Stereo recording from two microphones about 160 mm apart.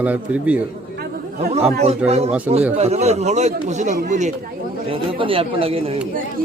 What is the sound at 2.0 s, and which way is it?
A man's voice, 40° right (ahead or behind).